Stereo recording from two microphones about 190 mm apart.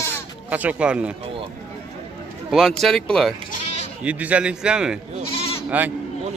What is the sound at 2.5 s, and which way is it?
A man's voice, centre (ahead or behind).